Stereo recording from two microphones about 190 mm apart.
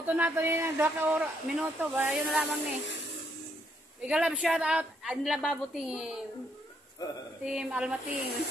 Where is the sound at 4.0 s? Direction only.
5° right (ahead or behind).